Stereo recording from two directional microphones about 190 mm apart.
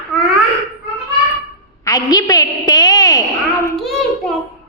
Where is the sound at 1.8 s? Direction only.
20° left (ahead or behind).